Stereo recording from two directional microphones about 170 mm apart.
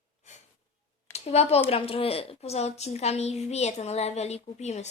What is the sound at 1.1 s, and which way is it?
A woman's voice, 40° left (ahead or behind).